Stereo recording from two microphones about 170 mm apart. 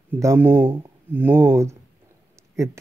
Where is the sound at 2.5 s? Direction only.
15° right (ahead or behind).